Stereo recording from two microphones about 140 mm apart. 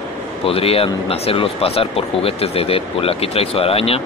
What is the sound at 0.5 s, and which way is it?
Speech, 45° left (ahead or behind).